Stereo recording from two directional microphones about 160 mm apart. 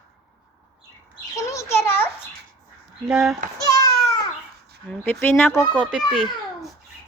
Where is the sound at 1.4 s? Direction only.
20° left (ahead or behind).